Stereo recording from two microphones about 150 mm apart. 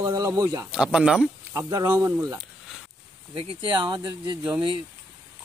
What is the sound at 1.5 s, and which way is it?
Speech, 20° right (ahead or behind).